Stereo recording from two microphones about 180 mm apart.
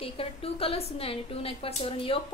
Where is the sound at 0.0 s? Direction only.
30° left (ahead or behind).